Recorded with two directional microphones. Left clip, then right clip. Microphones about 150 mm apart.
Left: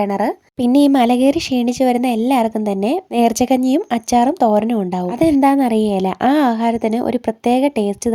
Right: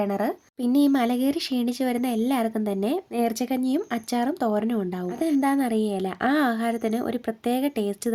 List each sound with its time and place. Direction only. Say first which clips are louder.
0.0 s speech: left 8 dB; 30° left (ahead or behind)
0.6 s speech: left 9 dB; 45° left (ahead or behind)